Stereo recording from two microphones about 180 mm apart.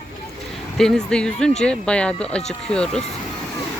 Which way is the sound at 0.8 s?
5° left (ahead or behind).